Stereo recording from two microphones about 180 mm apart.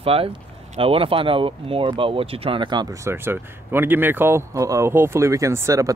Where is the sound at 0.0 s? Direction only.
30° right (ahead or behind).